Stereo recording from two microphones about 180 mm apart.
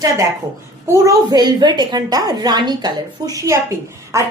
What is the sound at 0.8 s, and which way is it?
A woman's voice, 15° right (ahead or behind).